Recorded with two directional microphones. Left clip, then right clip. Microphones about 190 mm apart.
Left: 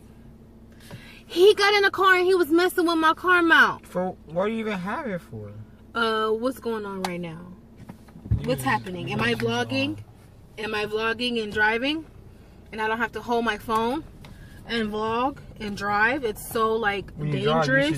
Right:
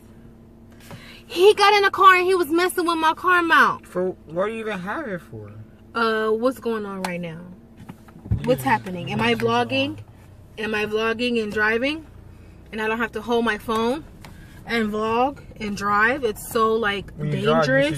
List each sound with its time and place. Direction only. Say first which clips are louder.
1.0 s a woman's voice: right 2 dB; 20° right (ahead or behind)
4.0 s speech: right 1 dB; 15° left (ahead or behind)
5.9 s a woman's voice: right 3 dB; 20° right (ahead or behind)
8.4 s a woman's voice: right 5 dB; 25° right (ahead or behind)